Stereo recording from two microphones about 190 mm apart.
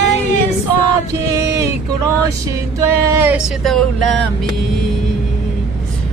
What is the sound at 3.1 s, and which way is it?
Speech, 10° right (ahead or behind).